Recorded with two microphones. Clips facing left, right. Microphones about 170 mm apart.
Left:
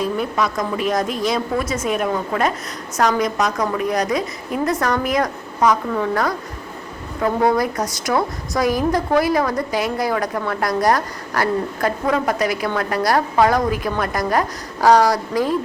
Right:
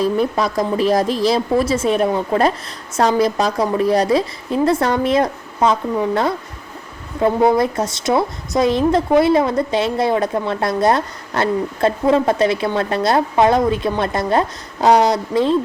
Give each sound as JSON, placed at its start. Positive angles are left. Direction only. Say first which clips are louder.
{"t": 0.0, "sound": "a woman's voice", "louder": "right 4 dB", "side_deg": -35}